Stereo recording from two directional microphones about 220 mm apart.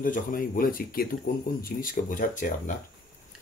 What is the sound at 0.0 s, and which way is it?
Speech, 40° left (ahead or behind).